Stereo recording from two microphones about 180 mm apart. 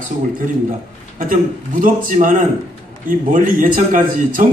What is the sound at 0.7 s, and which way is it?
A man's voice, 50° right (ahead or behind).